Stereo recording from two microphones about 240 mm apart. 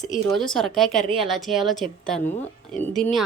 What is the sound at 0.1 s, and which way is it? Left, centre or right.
Speech, centre.